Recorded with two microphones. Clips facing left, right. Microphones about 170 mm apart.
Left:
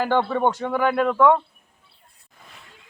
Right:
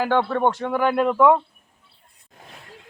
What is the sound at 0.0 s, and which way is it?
A man's voice, centre (ahead or behind).